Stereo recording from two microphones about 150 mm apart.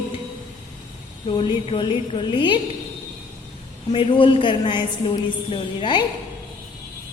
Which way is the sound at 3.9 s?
35° left (ahead or behind).